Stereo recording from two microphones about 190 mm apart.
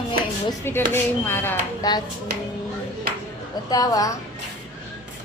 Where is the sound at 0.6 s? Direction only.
10° left (ahead or behind).